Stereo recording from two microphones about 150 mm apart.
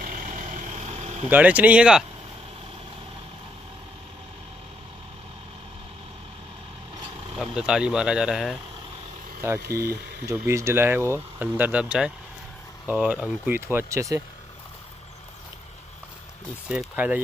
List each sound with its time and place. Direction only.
0.0 s vehicle: 65° right (ahead or behind); by 1.2 s 45° right (ahead or behind)
1.3 s speech: 10° right (ahead or behind)
7.3 s speech: 5° right (ahead or behind)
10.2 s speech: 20° right (ahead or behind)
16.6 s speech: 10° right (ahead or behind)